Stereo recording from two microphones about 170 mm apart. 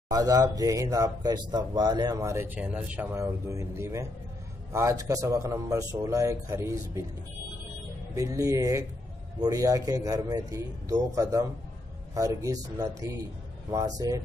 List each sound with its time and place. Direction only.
0.1 s a man's voice: 20° right (ahead or behind)
8.1 s a man's voice: 20° right (ahead or behind)